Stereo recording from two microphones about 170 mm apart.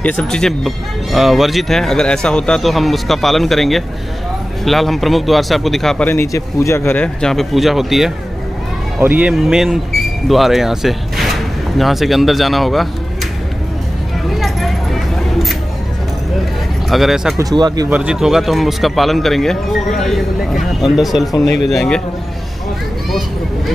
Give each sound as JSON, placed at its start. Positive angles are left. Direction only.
{"t": 0.0, "sound": "speech", "side_deg": 5}
{"t": 14.3, "sound": "a sound", "side_deg": 0}
{"t": 16.9, "sound": "speech", "side_deg": 0}
{"t": 17.4, "sound": "speech", "side_deg": -25}
{"t": 17.8, "sound": "speech", "side_deg": -10}